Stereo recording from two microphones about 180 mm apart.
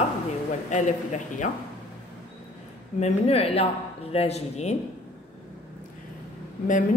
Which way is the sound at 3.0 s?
35° left (ahead or behind).